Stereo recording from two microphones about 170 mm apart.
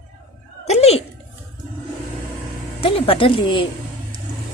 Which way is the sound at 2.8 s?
35° left (ahead or behind).